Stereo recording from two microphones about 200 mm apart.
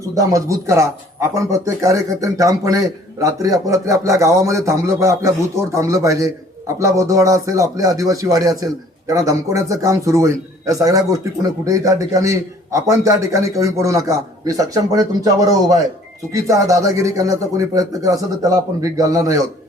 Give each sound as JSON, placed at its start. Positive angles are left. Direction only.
{"t": 0.0, "sound": "speech", "side_deg": -15}